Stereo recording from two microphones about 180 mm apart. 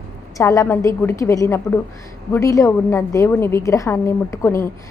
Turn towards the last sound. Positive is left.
turn(degrees=15)  # may be behind; listen again after turning